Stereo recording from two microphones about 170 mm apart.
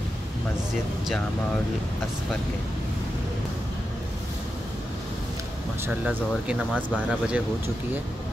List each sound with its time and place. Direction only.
6.0 s speech: 5° right (ahead or behind)